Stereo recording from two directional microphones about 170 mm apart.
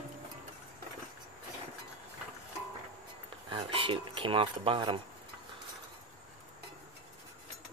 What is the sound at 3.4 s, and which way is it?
Speech, 30° right (ahead or behind).